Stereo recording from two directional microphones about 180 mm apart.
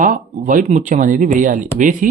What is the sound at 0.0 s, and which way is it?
Speech, 45° right (ahead or behind).